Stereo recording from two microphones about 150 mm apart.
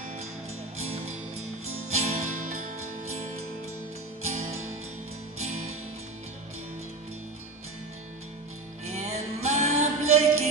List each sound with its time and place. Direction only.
0.7 s music: 45° right (ahead or behind)
4.2 s music: 50° right (ahead or behind)
8.8 s music: 50° right (ahead or behind)